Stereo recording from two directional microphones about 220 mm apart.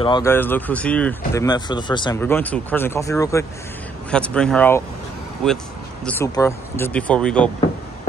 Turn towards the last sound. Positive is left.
turn(degrees=5)  # may be behind; listen again after turning